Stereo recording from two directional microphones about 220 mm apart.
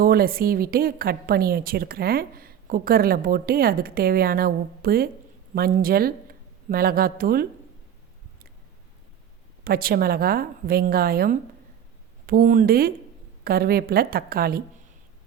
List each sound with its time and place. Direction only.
0.0 s a woman's voice: 40° right (ahead or behind)
9.6 s a woman's voice: 40° right (ahead or behind)